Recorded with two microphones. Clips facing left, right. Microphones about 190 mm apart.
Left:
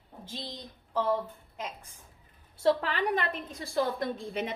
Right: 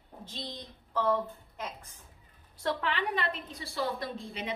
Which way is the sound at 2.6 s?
35° left (ahead or behind).